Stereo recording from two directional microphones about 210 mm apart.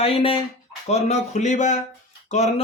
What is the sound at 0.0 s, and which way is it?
Speech, 25° left (ahead or behind).